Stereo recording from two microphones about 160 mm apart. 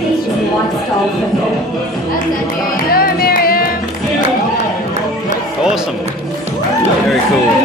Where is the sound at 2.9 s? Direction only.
65° left (ahead or behind).